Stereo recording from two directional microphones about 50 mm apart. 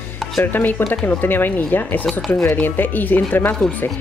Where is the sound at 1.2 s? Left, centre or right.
Left.